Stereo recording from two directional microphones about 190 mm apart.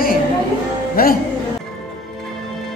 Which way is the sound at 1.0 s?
50° left (ahead or behind).